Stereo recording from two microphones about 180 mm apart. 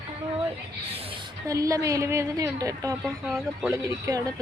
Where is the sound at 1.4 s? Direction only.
20° right (ahead or behind).